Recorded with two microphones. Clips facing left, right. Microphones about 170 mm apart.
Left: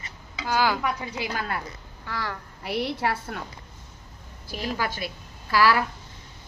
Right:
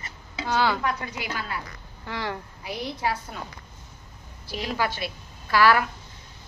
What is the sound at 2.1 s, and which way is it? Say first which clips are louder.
Speech: right 2 dB; 25° right (ahead or behind).